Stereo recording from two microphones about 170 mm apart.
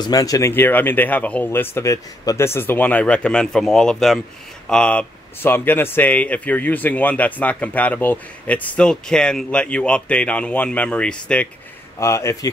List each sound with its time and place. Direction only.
0.0 s speech: 20° left (ahead or behind); by 11.4 s 5° left (ahead or behind)
12.0 s speech: 15° left (ahead or behind)